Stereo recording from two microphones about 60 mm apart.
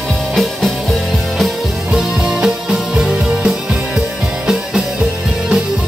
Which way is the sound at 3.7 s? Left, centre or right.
Centre.